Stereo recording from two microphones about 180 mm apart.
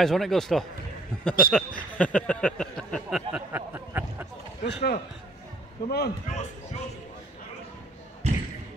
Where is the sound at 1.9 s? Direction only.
5° left (ahead or behind); by 4.2 s 10° right (ahead or behind).